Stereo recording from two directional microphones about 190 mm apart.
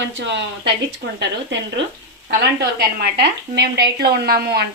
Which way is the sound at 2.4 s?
60° right (ahead or behind).